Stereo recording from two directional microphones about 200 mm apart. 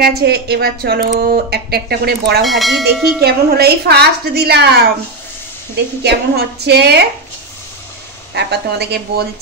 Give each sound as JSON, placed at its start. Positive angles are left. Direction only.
{"t": 0.0, "sound": "speech", "side_deg": -50}
{"t": 2.4, "sound": "speech", "side_deg": 0}
{"t": 3.2, "sound": "speech", "side_deg": -55}
{"t": 6.0, "sound": "a woman's voice", "side_deg": -55}
{"t": 8.4, "sound": "a woman's voice", "side_deg": -55}